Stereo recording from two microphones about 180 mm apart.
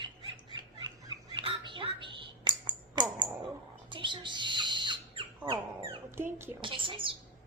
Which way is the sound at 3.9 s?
25° right (ahead or behind).